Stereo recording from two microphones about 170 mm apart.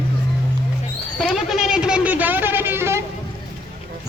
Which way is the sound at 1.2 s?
Centre (ahead or behind).